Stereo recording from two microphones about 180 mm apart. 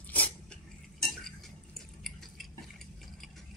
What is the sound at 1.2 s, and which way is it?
Drip, centre (ahead or behind).